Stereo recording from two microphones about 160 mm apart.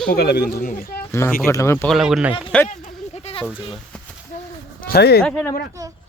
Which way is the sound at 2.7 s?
50° left (ahead or behind).